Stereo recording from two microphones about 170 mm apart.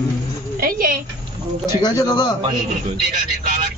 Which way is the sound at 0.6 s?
55° right (ahead or behind).